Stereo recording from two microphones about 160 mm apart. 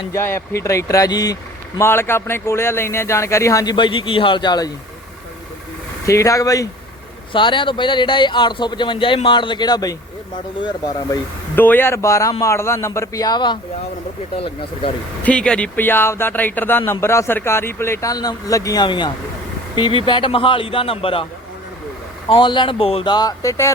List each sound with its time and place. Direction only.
0.1 s speech: 15° left (ahead or behind)
6.1 s speech: 20° left (ahead or behind)
7.3 s speech: 30° left (ahead or behind)
11.1 s speech: 10° left (ahead or behind); by 14.9 s 35° left (ahead or behind)
15.2 s speech: 5° left (ahead or behind); by 21.2 s 35° left (ahead or behind)
22.3 s speech: 30° left (ahead or behind)